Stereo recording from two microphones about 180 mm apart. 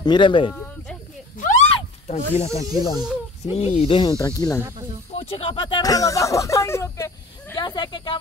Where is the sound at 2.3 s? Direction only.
35° left (ahead or behind).